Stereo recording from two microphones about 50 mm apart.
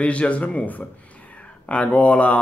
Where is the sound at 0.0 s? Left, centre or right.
Left.